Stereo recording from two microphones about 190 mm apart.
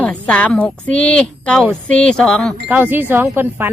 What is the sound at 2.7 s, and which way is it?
Speech, 10° right (ahead or behind).